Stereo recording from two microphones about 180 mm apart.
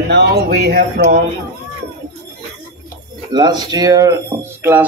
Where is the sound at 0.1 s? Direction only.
65° right (ahead or behind).